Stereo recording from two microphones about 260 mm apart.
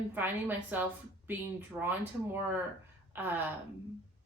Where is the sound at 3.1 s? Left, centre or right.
Centre.